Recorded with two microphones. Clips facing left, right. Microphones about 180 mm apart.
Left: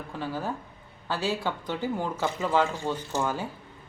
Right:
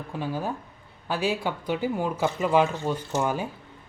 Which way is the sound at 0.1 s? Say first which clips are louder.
Right 2 dB; 15° right (ahead or behind).